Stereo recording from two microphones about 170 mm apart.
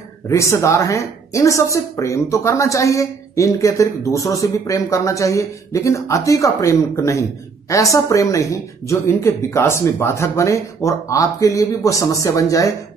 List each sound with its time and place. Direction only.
0.3 s speech: 15° left (ahead or behind)